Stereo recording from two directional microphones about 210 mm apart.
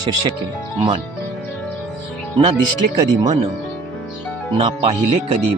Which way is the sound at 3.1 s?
20° right (ahead or behind).